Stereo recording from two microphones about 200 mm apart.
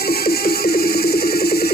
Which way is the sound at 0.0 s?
50° left (ahead or behind).